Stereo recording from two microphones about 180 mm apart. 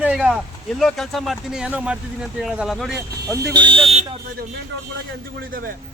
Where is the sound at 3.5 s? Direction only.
25° right (ahead or behind).